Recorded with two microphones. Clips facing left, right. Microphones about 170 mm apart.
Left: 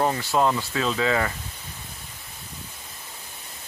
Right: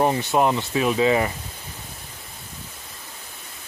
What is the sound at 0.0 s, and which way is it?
Speech, 20° right (ahead or behind).